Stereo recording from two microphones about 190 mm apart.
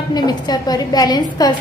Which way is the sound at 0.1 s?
20° left (ahead or behind).